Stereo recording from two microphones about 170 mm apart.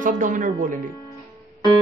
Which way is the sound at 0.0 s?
50° right (ahead or behind).